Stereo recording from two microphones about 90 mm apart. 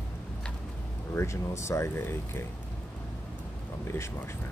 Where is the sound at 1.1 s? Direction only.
30° left (ahead or behind).